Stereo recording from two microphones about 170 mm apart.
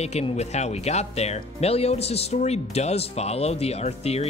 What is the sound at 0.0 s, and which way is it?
Speech, 40° left (ahead or behind).